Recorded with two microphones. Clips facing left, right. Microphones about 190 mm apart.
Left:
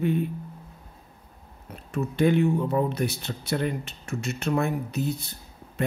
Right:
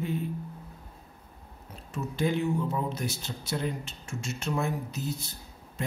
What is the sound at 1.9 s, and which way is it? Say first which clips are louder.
Speech: left 7 dB; 60° left (ahead or behind).